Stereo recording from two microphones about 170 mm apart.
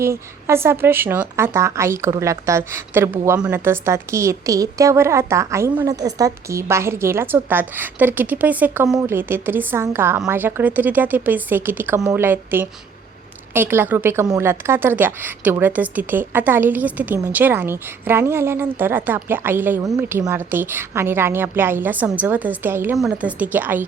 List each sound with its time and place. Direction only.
0.0 s a woman's voice: 15° right (ahead or behind)